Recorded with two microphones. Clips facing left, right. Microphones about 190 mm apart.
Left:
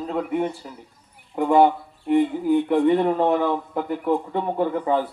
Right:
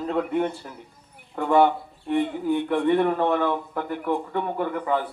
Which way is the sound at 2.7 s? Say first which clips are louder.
Even; 20° left (ahead or behind).